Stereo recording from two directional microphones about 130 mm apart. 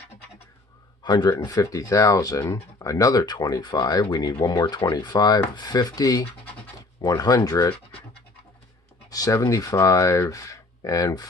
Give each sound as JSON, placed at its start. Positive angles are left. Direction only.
{"t": 1.0, "sound": "speech", "side_deg": 35}
{"t": 9.1, "sound": "speech", "side_deg": 25}